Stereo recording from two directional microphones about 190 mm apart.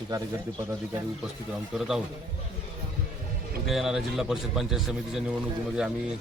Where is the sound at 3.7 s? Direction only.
Centre (ahead or behind).